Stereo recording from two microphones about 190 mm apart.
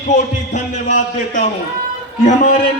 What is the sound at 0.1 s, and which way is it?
A man's voice, 40° left (ahead or behind).